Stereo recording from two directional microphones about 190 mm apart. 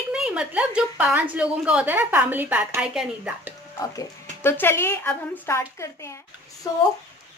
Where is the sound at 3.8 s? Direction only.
15° left (ahead or behind).